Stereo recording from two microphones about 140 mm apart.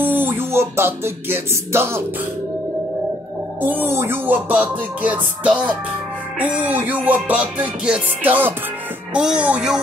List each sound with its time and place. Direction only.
0.0 s music: 15° right (ahead or behind)
3.6 s music: 15° right (ahead or behind)
9.1 s speech: 5° right (ahead or behind)